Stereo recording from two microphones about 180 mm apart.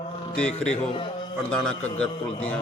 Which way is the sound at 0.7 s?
30° left (ahead or behind).